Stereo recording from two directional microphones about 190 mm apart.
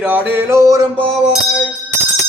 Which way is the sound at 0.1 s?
15° right (ahead or behind).